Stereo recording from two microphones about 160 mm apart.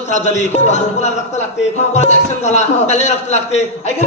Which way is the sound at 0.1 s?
45° left (ahead or behind).